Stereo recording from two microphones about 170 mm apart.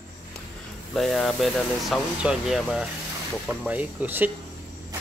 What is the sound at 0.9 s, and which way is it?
A man's voice, centre (ahead or behind).